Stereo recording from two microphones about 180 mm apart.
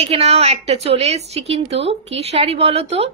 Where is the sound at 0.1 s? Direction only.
35° right (ahead or behind).